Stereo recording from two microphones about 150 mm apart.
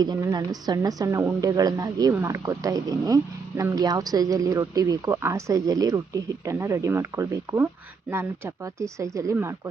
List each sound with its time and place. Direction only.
0.0 s a woman's voice: 25° right (ahead or behind)